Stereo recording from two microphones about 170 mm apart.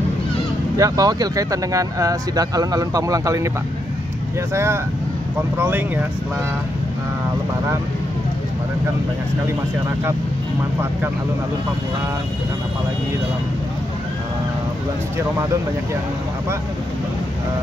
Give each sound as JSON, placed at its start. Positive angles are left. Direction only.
{"t": 0.7, "sound": "speech", "side_deg": -20}
{"t": 5.6, "sound": "speech", "side_deg": -10}